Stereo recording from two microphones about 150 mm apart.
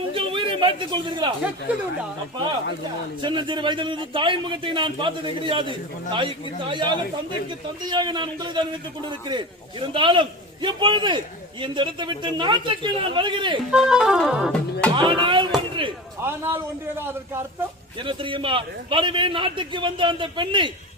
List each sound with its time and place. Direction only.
0.1 s a sound: 35° right (ahead or behind)
3.2 s a man's voice: 30° right (ahead or behind)
9.8 s a man's voice: 35° right (ahead or behind)
13.7 s music: 5° right (ahead or behind)
14.9 s a sound: 35° right (ahead or behind)
16.2 s a man's voice: 15° right (ahead or behind)
18.0 s a man's voice: 35° right (ahead or behind)